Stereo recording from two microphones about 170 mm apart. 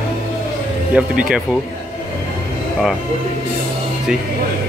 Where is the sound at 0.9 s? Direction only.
5° right (ahead or behind).